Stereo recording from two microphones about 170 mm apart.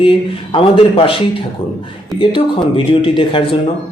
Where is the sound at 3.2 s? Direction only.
30° left (ahead or behind).